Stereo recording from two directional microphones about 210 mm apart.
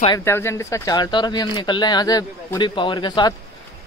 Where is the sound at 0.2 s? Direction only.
10° left (ahead or behind).